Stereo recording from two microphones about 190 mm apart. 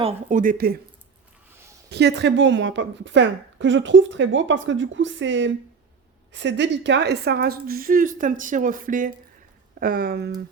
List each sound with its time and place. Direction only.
0.0 s a woman's voice: 35° right (ahead or behind)
1.9 s a woman's voice: 60° right (ahead or behind)